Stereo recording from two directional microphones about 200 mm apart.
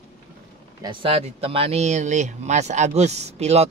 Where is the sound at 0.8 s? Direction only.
25° right (ahead or behind).